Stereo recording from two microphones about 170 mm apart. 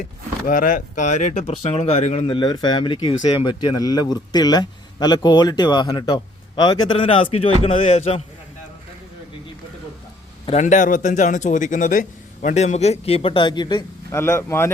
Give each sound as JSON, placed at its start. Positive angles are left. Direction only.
{"t": 0.0, "sound": "a man's voice", "side_deg": 55}
{"t": 10.4, "sound": "a man's voice", "side_deg": 40}
{"t": 14.2, "sound": "speech", "side_deg": 15}